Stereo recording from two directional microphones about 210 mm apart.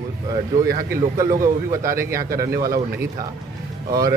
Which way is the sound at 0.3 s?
15° right (ahead or behind).